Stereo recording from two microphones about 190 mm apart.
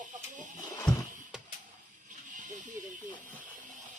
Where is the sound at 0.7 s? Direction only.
20° left (ahead or behind).